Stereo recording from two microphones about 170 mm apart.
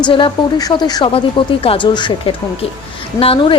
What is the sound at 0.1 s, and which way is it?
A woman's voice, 30° left (ahead or behind).